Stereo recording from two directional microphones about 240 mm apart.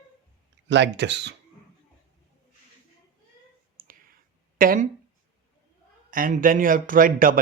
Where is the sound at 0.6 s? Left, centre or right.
Right.